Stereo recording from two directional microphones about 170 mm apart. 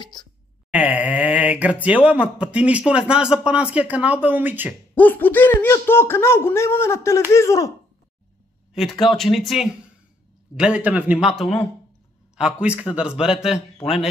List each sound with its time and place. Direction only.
0.0 s speech: 25° left (ahead or behind)
0.7 s speech: 10° right (ahead or behind)
4.9 s speech: 10° left (ahead or behind)
9.0 s speech: centre (ahead or behind)
12.4 s speech: 5° right (ahead or behind)